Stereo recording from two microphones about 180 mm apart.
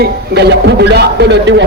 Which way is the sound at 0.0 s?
65° right (ahead or behind).